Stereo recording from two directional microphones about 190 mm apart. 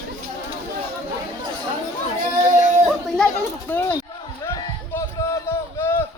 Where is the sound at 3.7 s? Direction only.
10° left (ahead or behind).